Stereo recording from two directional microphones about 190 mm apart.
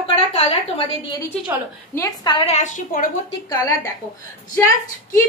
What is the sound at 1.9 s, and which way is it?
A woman's voice, 20° left (ahead or behind).